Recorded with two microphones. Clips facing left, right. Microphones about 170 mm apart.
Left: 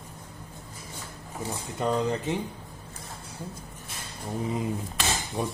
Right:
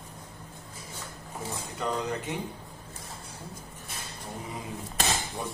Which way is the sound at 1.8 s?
20° left (ahead or behind).